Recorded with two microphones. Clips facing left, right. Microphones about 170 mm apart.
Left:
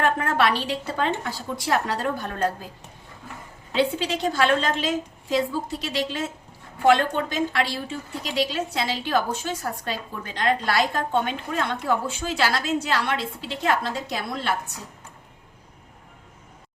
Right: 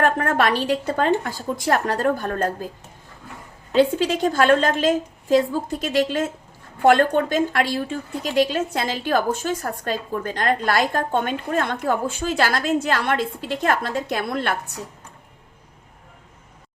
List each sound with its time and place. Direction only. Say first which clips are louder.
0.0 s a woman's voice: right 2 dB; 50° right (ahead or behind)
3.7 s a woman's voice: right 6 dB; 45° right (ahead or behind)